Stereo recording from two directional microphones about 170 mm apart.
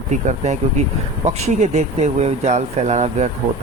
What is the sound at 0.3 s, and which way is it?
Speech, 45° right (ahead or behind).